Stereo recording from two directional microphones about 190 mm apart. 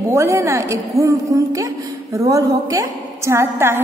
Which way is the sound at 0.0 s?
15° right (ahead or behind).